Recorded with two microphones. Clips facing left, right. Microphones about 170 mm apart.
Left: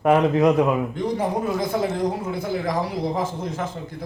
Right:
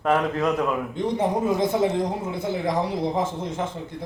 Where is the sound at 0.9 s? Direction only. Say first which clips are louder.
Even; 20° right (ahead or behind).